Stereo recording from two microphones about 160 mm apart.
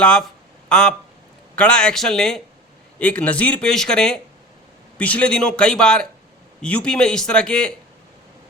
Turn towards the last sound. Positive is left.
turn(degrees=5)  # may be behind; listen again after turning